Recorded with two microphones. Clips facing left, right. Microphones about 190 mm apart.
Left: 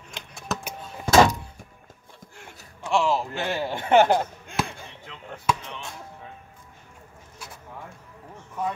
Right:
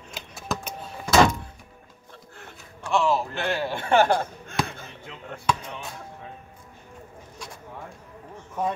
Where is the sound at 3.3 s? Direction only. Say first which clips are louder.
Right 1 dB; 15° left (ahead or behind).